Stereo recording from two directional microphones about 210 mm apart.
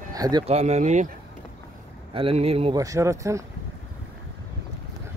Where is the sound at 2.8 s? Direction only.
15° right (ahead or behind).